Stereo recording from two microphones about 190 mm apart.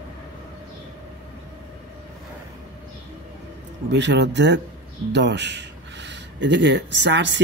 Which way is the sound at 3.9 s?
65° right (ahead or behind).